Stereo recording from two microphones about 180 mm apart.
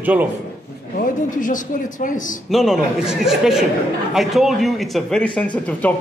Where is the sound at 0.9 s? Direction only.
50° left (ahead or behind).